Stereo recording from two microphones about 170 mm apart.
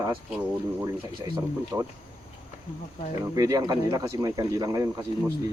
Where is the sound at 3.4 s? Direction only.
20° right (ahead or behind).